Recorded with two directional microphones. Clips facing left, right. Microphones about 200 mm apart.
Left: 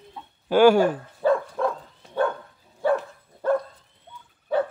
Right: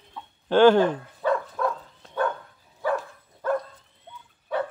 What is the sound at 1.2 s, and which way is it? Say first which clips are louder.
Dog: left 4 dB; 35° left (ahead or behind).